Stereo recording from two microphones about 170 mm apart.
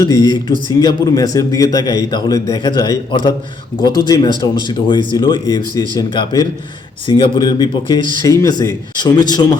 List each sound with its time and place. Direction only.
0.0 s a man's voice: 25° left (ahead or behind)